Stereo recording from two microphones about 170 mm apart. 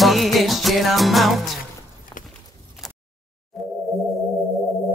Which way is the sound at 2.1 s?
20° left (ahead or behind).